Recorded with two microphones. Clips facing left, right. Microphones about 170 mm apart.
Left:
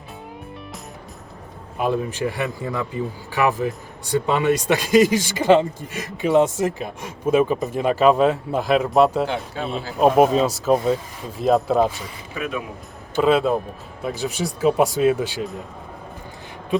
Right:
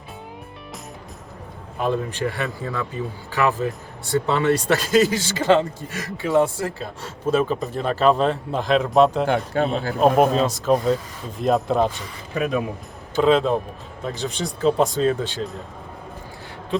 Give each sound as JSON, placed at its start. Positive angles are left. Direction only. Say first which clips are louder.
{"t": 1.8, "sound": "a man's voice", "louder": "left 1 dB", "side_deg": 10}
{"t": 9.2, "sound": "speech", "louder": "right 5 dB", "side_deg": -55}
{"t": 9.9, "sound": "speech", "louder": "left 2 dB", "side_deg": 5}
{"t": 12.3, "sound": "speech", "louder": "right 5 dB", "side_deg": -40}
{"t": 13.1, "sound": "a man's voice", "louder": "even", "side_deg": 5}